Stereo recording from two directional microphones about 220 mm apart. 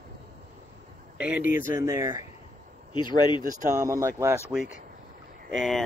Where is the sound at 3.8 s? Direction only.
15° right (ahead or behind).